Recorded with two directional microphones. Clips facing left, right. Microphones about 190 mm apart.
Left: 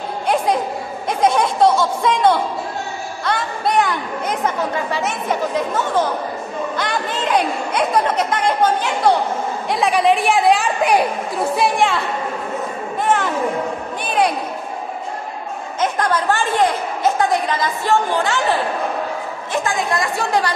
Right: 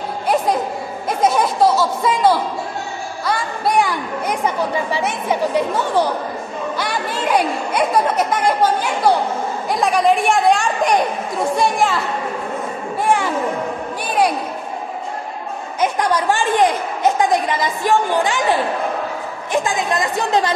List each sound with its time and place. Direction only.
1.2 s a woman's voice: 5° right (ahead or behind)
6.8 s a woman's voice: 10° right (ahead or behind)
13.0 s music: 10° right (ahead or behind)
15.8 s a woman's voice: 15° right (ahead or behind)